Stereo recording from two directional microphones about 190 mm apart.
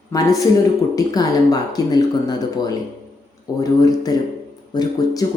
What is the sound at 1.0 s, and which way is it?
Speech, 20° left (ahead or behind).